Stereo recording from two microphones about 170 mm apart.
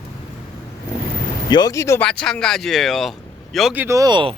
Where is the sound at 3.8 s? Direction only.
20° right (ahead or behind).